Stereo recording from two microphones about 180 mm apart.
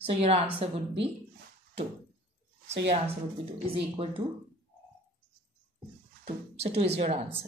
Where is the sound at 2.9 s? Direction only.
30° right (ahead or behind).